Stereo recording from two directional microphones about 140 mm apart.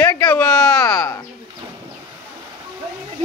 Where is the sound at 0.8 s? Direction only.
25° left (ahead or behind).